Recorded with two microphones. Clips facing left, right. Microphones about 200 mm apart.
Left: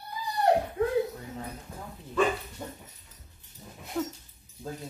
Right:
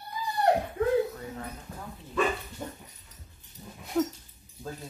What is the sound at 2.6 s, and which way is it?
Dog, centre (ahead or behind).